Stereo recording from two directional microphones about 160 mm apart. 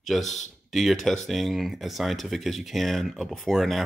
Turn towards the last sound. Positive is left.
turn(degrees=0)  # may be behind; listen again after turning